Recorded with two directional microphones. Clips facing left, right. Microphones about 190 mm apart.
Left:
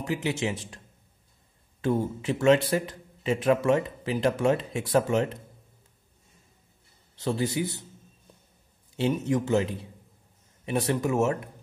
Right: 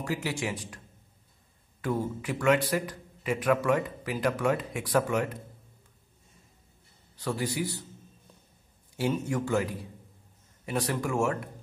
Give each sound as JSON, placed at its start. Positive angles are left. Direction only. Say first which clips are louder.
{"t": 0.0, "sound": "a man's voice", "louder": "left 3 dB", "side_deg": 20}
{"t": 1.8, "sound": "a man's voice", "louder": "left 4 dB", "side_deg": 25}
{"t": 7.2, "sound": "a man's voice", "louder": "left 3 dB", "side_deg": 25}
{"t": 8.9, "sound": "a man's voice", "louder": "left 3 dB", "side_deg": 20}